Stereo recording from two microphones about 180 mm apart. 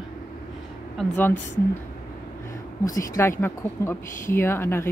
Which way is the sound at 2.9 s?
15° left (ahead or behind).